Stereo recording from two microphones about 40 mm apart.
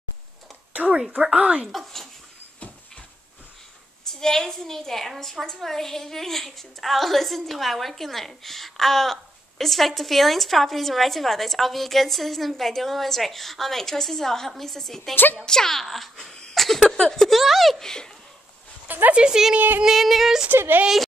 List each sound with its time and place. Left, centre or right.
0.8 s a woman's voice: centre
1.3 s speech: right
1.7 s a woman's voice: centre
4.1 s a woman's voice: centre
16.5 s a sound: centre
16.8 s speech: centre
17.3 s a woman's voice: centre
17.8 s speech: centre
18.9 s speech: right
19.1 s a woman's voice: centre
19.8 s a woman's voice: centre
20.5 s speech: right